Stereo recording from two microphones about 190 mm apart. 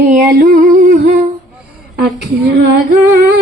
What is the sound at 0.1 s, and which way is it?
Music, 50° right (ahead or behind).